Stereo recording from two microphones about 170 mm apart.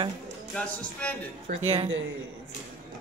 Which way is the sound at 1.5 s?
40° right (ahead or behind).